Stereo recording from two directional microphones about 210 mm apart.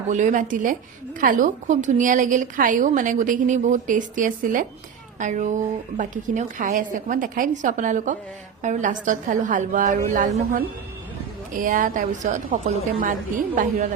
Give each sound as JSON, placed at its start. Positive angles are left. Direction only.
{"t": 0.1, "sound": "a woman's voice", "side_deg": -35}